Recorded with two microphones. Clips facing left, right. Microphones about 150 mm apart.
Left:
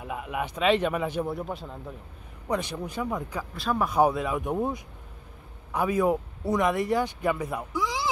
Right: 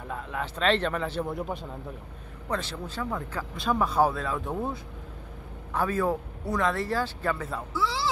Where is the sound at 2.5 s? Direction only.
15° left (ahead or behind).